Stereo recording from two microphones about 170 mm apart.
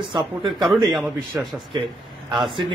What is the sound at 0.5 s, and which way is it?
A man's voice, centre (ahead or behind).